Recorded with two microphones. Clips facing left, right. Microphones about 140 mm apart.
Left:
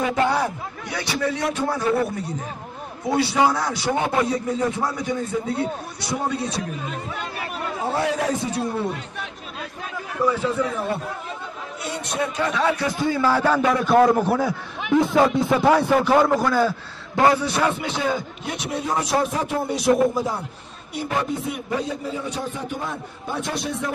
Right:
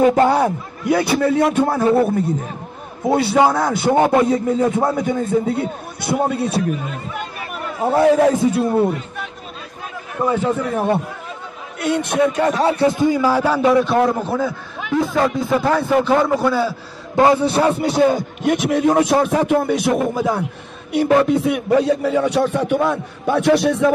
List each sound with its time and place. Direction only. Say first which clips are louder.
0.0 s a man's voice: right 8 dB; 40° right (ahead or behind)
0.3 s a man's voice: right 6 dB; 50° right (ahead or behind)
3.5 s a man's voice: right 8 dB; 55° right (ahead or behind)
7.8 s a man's voice: right 10 dB; 55° right (ahead or behind)
10.2 s a man's voice: right 3 dB; 50° right (ahead or behind); by 13.6 s 10° right (ahead or behind)
13.8 s a man's voice: left 1 dB; centre (ahead or behind)
14.4 s a man's voice: right 2 dB; 15° left (ahead or behind)
16.3 s a man's voice: right 2 dB; 5° right (ahead or behind)
17.1 s a man's voice: right 5 dB; 20° right (ahead or behind); by 18.1 s 40° right (ahead or behind)
18.4 s a man's voice: right 12 dB; 60° right (ahead or behind)
20.9 s speech: right 11 dB; 80° right